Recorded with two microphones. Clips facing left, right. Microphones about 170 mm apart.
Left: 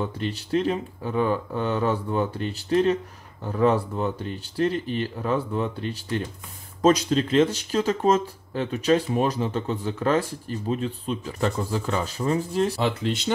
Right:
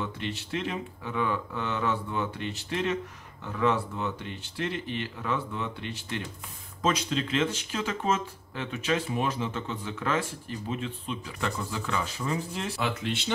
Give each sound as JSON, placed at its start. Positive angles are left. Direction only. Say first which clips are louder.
{"t": 0.0, "sound": "speech", "louder": "left 5 dB", "side_deg": 40}